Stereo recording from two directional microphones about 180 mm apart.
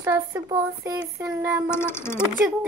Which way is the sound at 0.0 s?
15° right (ahead or behind).